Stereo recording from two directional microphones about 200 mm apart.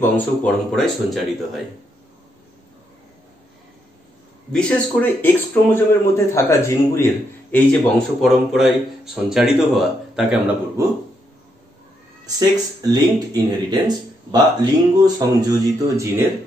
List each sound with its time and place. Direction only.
0.0 s speech: 10° left (ahead or behind)
4.5 s speech: 5° left (ahead or behind)
8.2 s speech: centre (ahead or behind)
12.4 s speech: 20° right (ahead or behind)